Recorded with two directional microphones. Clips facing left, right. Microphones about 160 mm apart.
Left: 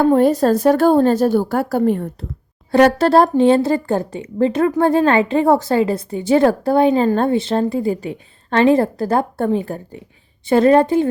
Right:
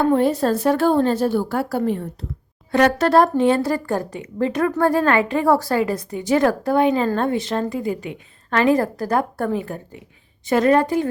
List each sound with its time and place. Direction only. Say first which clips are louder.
0.1 s a woman's voice: left 4 dB; 45° left (ahead or behind)
2.7 s a woman's voice: left 3 dB; 30° left (ahead or behind)